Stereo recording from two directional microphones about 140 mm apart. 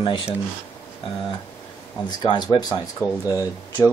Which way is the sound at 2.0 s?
30° left (ahead or behind).